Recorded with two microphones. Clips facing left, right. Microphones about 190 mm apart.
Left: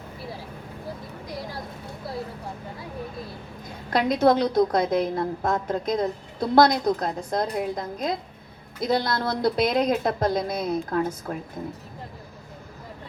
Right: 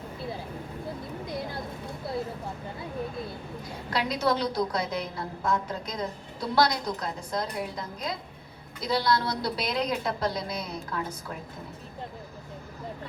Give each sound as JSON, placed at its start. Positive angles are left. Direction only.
{"t": 3.8, "sound": "a woman's voice", "side_deg": 45}